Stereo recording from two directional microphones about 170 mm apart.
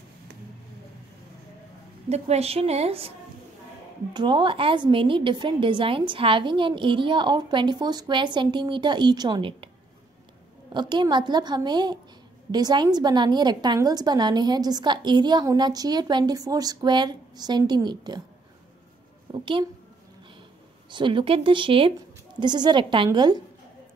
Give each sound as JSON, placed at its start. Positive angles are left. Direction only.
{"t": 2.0, "sound": "a woman's voice", "side_deg": -40}
{"t": 4.1, "sound": "a woman's voice", "side_deg": -25}
{"t": 10.7, "sound": "a woman's voice", "side_deg": -25}
{"t": 19.4, "sound": "a woman's voice", "side_deg": -30}
{"t": 20.9, "sound": "a woman's voice", "side_deg": -30}